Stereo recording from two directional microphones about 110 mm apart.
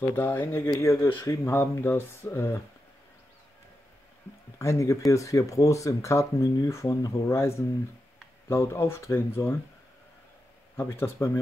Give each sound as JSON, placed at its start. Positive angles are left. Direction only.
{"t": 0.1, "sound": "speech", "side_deg": 20}
{"t": 4.6, "sound": "speech", "side_deg": 25}
{"t": 10.8, "sound": "speech", "side_deg": 20}